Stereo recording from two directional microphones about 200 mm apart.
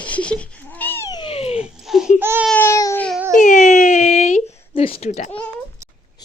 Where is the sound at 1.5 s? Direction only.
5° right (ahead or behind).